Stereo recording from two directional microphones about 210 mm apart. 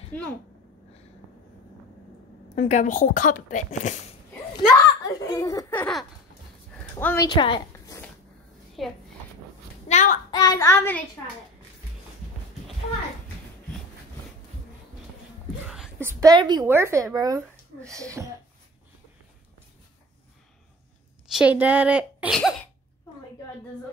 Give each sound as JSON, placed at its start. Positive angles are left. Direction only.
{"t": 0.1, "sound": "speech", "side_deg": 5}
{"t": 2.5, "sound": "speech", "side_deg": 35}
{"t": 4.6, "sound": "a child's voice", "side_deg": 15}
{"t": 6.8, "sound": "a sound", "side_deg": 10}
{"t": 7.2, "sound": "speech", "side_deg": 20}
{"t": 8.8, "sound": "a woman's voice", "side_deg": 0}
{"t": 9.8, "sound": "a child's voice", "side_deg": 35}
{"t": 10.3, "sound": "a child's voice", "side_deg": 15}
{"t": 15.7, "sound": "a woman's voice", "side_deg": -5}
{"t": 21.3, "sound": "a woman's voice", "side_deg": -5}